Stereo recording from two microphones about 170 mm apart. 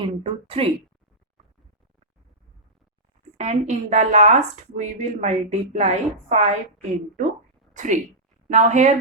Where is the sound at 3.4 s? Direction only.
40° right (ahead or behind).